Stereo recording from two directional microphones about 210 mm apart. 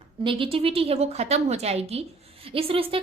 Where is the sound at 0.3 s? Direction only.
25° right (ahead or behind).